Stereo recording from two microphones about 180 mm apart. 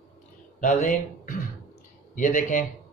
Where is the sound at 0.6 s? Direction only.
45° left (ahead or behind).